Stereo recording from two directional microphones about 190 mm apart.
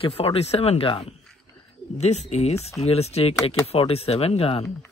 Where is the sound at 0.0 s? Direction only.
30° left (ahead or behind).